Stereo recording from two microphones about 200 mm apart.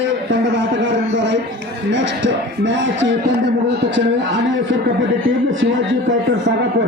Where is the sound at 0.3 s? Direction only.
60° right (ahead or behind).